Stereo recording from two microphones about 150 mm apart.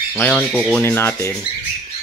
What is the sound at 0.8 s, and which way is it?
Speech, 15° left (ahead or behind).